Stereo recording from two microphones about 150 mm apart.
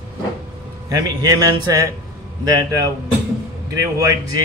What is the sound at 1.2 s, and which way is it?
Speech, 25° right (ahead or behind).